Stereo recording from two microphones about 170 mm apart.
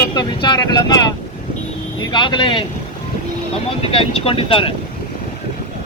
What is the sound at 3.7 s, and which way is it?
Speech, 35° left (ahead or behind).